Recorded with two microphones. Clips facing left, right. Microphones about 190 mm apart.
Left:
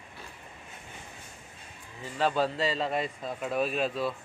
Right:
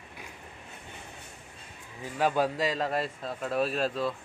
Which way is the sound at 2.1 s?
10° right (ahead or behind).